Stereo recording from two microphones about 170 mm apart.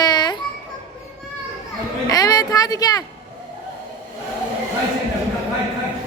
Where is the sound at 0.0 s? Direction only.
25° left (ahead or behind).